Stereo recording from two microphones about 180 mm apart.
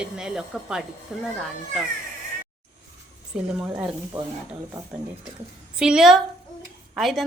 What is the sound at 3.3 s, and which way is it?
Speech, 5° right (ahead or behind).